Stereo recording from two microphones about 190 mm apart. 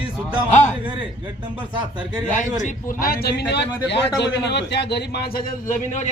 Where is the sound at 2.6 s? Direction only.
50° left (ahead or behind).